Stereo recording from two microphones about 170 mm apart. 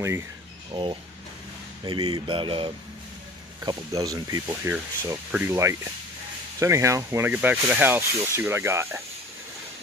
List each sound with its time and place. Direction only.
0.7 s speech: 30° right (ahead or behind)
3.6 s speech: 20° right (ahead or behind)